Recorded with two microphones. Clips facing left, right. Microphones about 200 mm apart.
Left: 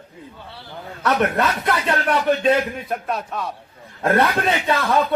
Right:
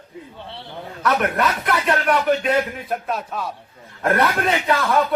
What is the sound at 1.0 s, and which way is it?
Speech, 25° left (ahead or behind).